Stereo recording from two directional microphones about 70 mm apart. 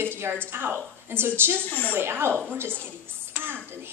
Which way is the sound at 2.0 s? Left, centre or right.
Right.